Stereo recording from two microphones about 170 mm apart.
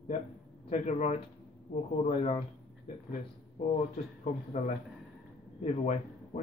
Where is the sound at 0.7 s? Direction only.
40° left (ahead or behind).